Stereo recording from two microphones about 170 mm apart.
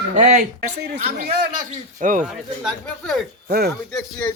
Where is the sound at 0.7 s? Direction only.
75° right (ahead or behind).